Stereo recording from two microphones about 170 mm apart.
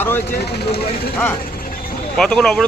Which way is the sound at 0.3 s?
75° left (ahead or behind).